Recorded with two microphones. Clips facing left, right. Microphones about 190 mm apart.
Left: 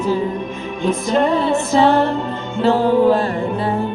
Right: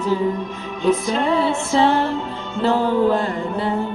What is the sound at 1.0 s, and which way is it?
Music, 45° left (ahead or behind).